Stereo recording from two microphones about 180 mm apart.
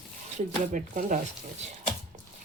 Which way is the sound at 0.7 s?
45° right (ahead or behind).